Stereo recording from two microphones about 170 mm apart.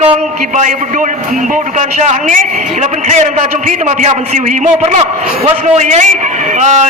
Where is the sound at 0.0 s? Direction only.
40° right (ahead or behind).